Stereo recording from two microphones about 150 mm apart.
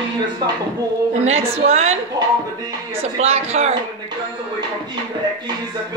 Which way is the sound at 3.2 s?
45° right (ahead or behind).